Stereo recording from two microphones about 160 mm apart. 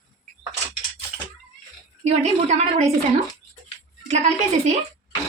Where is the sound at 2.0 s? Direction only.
45° right (ahead or behind).